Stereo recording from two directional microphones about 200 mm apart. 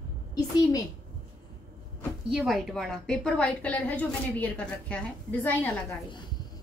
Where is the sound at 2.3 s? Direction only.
Centre (ahead or behind).